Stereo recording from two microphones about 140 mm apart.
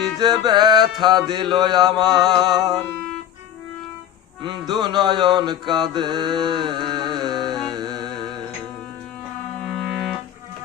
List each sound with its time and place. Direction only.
0.2 s music: 30° right (ahead or behind)
1.0 s mantra: 30° right (ahead or behind)
4.4 s mantra: 30° right (ahead or behind)
7.7 s music: 30° right (ahead or behind)
9.7 s organ: centre (ahead or behind)